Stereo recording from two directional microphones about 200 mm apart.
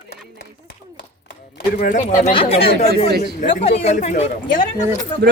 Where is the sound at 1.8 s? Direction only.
40° left (ahead or behind).